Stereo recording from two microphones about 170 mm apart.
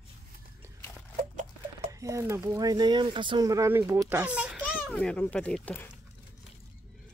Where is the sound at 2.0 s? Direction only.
15° right (ahead or behind).